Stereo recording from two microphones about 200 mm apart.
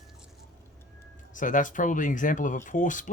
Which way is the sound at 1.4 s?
40° left (ahead or behind).